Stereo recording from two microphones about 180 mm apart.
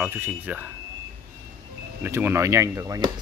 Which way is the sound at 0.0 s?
10° right (ahead or behind).